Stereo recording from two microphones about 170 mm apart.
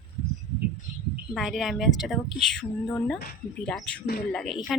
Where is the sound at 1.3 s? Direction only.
Centre (ahead or behind).